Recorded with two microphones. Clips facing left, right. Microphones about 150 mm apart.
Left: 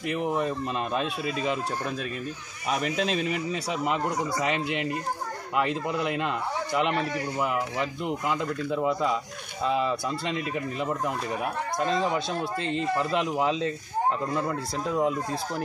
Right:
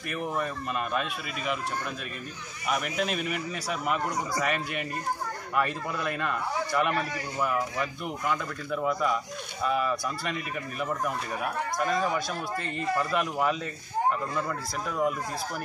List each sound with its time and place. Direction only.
0.1 s a man's voice: 20° left (ahead or behind)
2.7 s a man's voice: 30° left (ahead or behind)